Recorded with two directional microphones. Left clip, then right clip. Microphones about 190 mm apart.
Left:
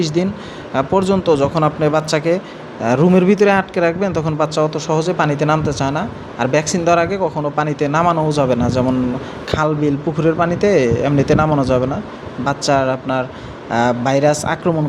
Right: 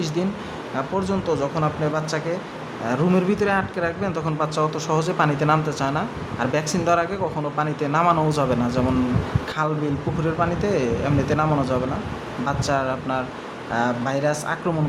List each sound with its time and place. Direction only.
0.2 s a man's voice: 25° left (ahead or behind)